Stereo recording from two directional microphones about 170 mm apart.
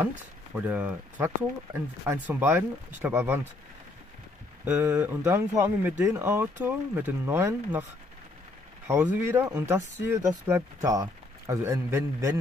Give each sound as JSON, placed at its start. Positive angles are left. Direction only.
{"t": 0.6, "sound": "speech", "side_deg": -10}
{"t": 4.6, "sound": "speech", "side_deg": -10}
{"t": 8.8, "sound": "speech", "side_deg": -15}